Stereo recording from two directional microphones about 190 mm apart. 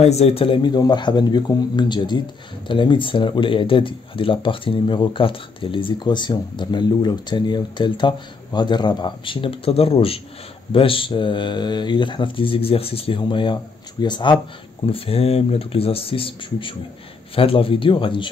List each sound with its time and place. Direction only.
0.0 s speech: 35° left (ahead or behind)